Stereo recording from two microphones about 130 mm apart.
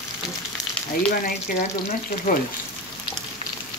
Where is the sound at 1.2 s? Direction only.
90° left.